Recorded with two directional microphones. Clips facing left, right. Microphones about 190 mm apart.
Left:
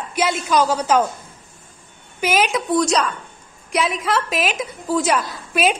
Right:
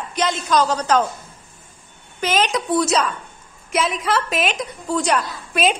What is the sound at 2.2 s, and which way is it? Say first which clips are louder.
A woman's voice: left 1 dB; 10° left (ahead or behind).